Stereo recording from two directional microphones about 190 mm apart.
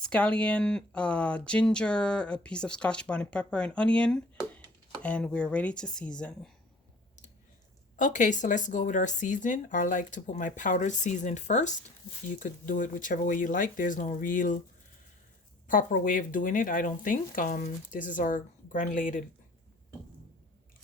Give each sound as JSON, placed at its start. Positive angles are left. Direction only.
{"t": 0.0, "sound": "speech", "side_deg": 5}
{"t": 7.9, "sound": "speech", "side_deg": 40}
{"t": 15.6, "sound": "speech", "side_deg": 45}